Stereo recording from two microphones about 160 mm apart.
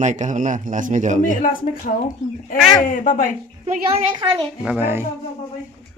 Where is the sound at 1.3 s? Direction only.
55° left (ahead or behind).